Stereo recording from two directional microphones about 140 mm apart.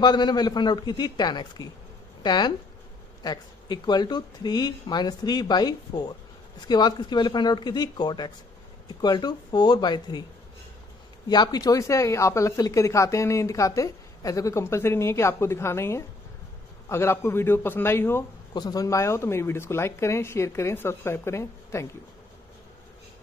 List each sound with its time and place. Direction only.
0.0 s speech: 30° left (ahead or behind)
11.2 s a man's voice: 30° left (ahead or behind)
18.5 s speech: 30° left (ahead or behind)